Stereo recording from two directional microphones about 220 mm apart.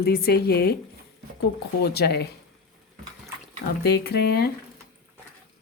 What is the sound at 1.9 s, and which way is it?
Speech, 45° left (ahead or behind).